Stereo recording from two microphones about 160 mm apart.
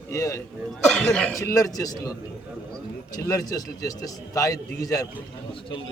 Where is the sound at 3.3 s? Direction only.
20° left (ahead or behind).